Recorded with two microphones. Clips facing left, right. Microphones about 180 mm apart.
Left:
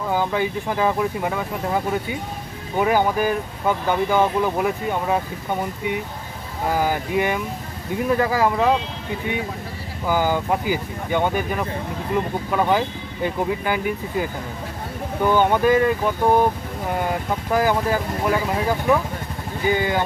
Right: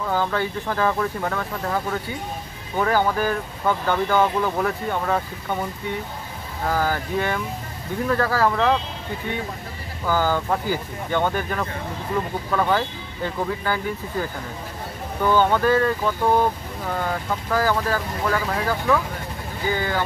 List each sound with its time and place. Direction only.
0.1 s speech: 15° left (ahead or behind)
10.0 s speech: 15° left (ahead or behind)
15.2 s speech: 15° left (ahead or behind)